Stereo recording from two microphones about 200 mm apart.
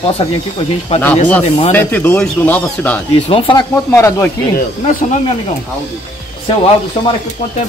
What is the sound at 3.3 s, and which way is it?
Speech, 25° left (ahead or behind).